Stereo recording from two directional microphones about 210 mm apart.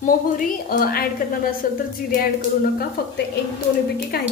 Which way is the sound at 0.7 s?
45° left (ahead or behind).